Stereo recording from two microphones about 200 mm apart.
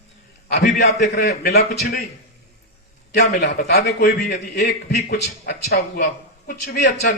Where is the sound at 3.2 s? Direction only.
50° left (ahead or behind).